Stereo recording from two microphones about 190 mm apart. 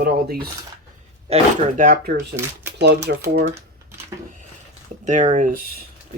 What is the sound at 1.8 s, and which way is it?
Speech, 50° right (ahead or behind).